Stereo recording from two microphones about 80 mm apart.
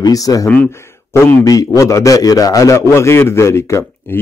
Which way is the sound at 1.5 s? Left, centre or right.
Left.